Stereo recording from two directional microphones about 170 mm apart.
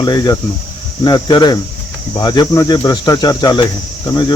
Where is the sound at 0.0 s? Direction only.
25° left (ahead or behind).